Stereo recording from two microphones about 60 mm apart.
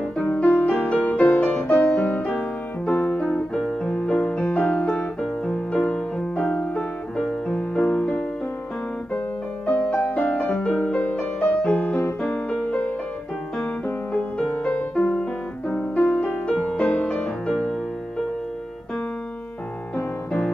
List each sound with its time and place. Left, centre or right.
0.2 s music: centre
4.7 s piano: left
5.5 s music: centre
9.7 s music: left
10.5 s music: centre
16.3 s music: centre
16.6 s music: left